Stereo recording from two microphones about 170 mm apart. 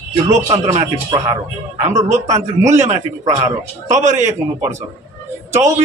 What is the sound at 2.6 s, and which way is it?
A man's voice, 40° right (ahead or behind).